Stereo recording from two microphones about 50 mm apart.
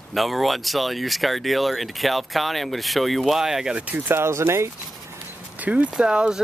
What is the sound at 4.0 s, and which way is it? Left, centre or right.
Speech, right.